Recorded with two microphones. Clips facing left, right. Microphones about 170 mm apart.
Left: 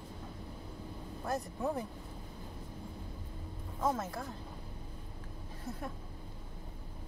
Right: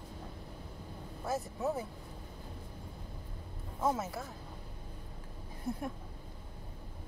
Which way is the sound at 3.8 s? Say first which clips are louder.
Right 1 dB; 5° right (ahead or behind).